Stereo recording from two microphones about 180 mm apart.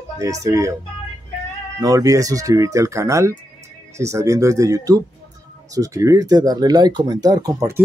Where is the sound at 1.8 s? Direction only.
20° right (ahead or behind).